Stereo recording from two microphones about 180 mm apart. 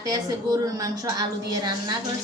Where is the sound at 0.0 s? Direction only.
20° right (ahead or behind).